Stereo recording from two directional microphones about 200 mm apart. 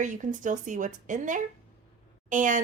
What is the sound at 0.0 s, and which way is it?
A woman's voice, 40° right (ahead or behind).